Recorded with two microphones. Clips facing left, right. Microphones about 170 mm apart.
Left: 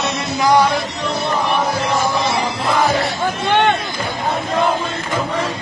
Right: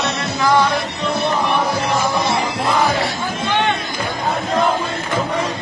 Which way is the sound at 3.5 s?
50° left (ahead or behind).